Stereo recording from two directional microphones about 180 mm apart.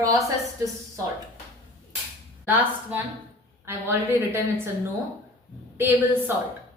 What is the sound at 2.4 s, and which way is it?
A woman's voice, 10° right (ahead or behind).